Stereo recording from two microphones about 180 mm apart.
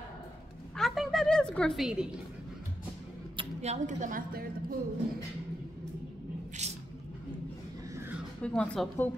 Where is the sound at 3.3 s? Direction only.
35° right (ahead or behind); by 4.7 s 55° right (ahead or behind).